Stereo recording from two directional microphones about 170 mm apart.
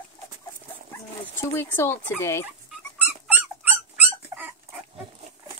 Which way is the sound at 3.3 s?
10° right (ahead or behind).